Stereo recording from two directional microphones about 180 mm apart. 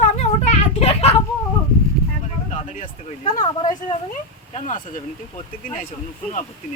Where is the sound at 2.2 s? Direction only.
40° left (ahead or behind).